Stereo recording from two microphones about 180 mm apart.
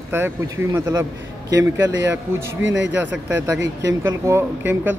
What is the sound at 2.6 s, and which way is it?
Speech, 90° right.